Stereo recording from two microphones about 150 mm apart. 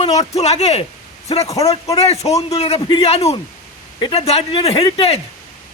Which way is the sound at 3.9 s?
30° left (ahead or behind).